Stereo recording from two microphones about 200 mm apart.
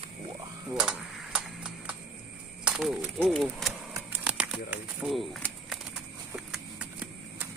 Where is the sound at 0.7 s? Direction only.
5° right (ahead or behind).